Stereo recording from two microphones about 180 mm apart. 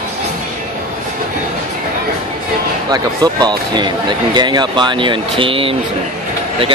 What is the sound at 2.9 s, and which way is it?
Speech, 25° right (ahead or behind).